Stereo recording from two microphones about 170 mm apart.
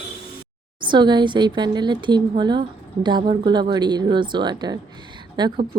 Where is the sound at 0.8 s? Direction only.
25° right (ahead or behind).